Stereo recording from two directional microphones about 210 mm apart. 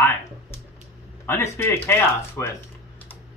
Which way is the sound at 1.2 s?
10° left (ahead or behind).